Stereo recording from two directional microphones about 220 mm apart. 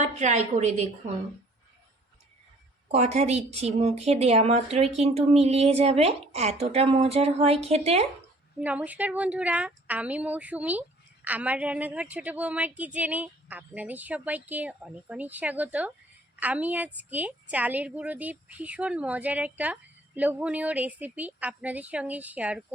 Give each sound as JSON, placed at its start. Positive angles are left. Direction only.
{"t": 0.0, "sound": "a woman's voice", "side_deg": -30}
{"t": 2.9, "sound": "a woman's voice", "side_deg": -30}
{"t": 8.5, "sound": "a woman's voice", "side_deg": -5}